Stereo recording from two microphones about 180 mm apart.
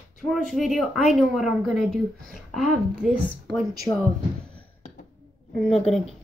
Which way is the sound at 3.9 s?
20° left (ahead or behind).